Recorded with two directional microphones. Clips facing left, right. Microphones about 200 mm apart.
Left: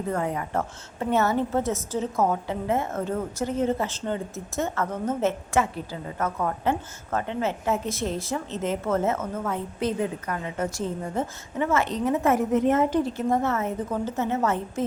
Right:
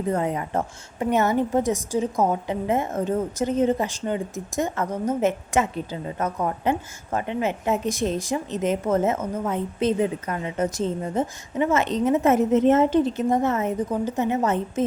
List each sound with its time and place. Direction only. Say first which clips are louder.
0.1 s a woman's voice: right 3 dB; 20° right (ahead or behind)